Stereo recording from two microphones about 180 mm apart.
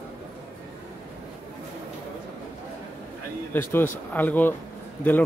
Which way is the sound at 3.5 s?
10° left (ahead or behind).